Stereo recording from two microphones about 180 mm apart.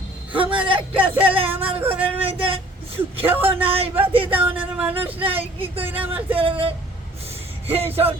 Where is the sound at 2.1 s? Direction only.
30° right (ahead or behind).